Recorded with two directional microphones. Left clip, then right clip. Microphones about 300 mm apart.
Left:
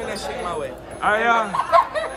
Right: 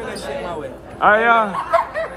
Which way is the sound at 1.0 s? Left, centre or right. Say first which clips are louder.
Right 5 dB; centre.